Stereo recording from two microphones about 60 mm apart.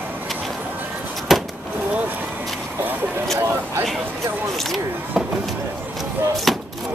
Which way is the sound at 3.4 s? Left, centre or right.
Right.